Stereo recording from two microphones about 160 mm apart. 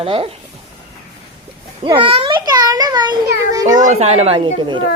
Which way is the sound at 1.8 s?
30° right (ahead or behind).